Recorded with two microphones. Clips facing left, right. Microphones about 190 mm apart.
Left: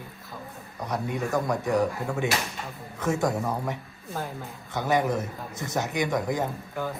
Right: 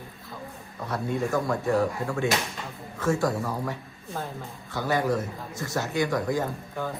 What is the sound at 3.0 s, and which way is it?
A man's voice, 20° left (ahead or behind).